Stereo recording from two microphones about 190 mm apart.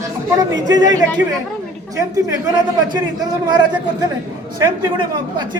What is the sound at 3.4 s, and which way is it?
A man's voice, 20° right (ahead or behind).